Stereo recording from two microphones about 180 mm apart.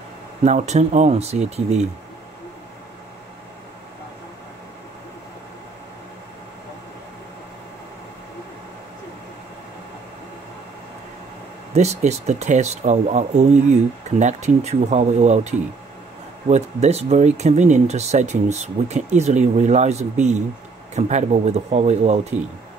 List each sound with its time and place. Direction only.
0.4 s speech: 40° right (ahead or behind)
11.7 s speech: 40° right (ahead or behind)